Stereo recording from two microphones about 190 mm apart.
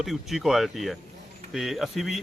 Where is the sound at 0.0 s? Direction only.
Centre (ahead or behind).